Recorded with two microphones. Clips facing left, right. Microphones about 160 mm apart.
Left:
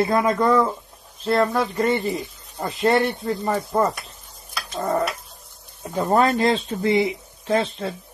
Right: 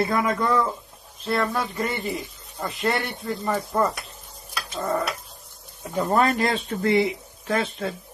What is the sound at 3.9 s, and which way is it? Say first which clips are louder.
Stir: right 1 dB; centre (ahead or behind).